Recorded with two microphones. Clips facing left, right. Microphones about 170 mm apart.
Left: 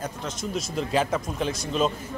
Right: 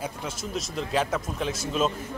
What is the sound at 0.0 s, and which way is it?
A man's voice, 5° right (ahead or behind).